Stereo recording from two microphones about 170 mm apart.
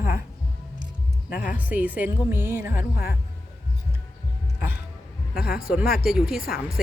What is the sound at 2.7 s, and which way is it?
Speech, 60° left (ahead or behind).